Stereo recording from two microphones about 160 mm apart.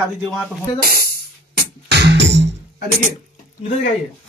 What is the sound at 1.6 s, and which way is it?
Music, 90° right.